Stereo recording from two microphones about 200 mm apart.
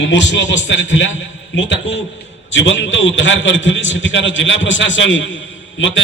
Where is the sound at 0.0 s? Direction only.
65° left (ahead or behind).